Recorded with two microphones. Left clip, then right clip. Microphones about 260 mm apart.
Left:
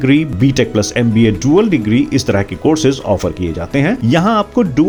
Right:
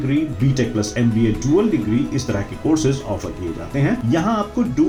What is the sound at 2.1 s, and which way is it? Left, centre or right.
Speech, left.